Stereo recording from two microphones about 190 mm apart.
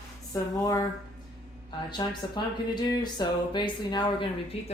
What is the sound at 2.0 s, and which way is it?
Speech, 20° left (ahead or behind).